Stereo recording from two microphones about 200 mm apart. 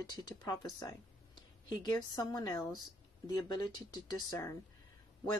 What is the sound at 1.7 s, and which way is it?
Speech, 20° left (ahead or behind).